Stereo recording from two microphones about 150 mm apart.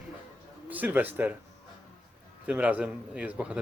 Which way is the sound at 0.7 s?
10° right (ahead or behind).